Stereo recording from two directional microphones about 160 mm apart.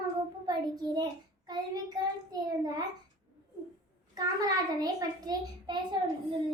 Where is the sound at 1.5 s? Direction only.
25° right (ahead or behind).